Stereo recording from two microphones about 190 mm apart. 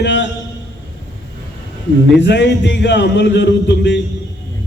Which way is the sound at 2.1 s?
65° left (ahead or behind).